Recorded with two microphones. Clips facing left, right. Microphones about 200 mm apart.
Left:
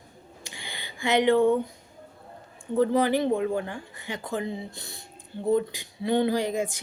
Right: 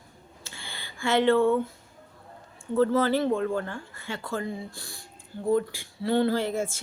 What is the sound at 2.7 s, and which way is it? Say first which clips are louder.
A woman's voice: even; 15° left (ahead or behind).